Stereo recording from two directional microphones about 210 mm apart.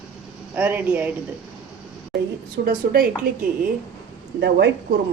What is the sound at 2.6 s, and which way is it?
Speech, 45° right (ahead or behind).